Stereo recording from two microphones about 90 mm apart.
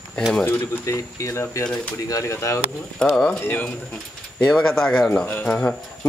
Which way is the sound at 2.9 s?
10° left (ahead or behind).